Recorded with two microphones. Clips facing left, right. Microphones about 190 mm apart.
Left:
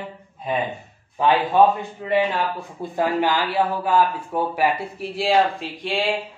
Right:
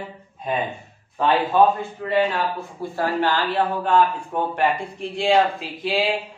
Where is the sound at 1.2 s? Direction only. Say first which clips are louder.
Left 1 dB; 15° left (ahead or behind).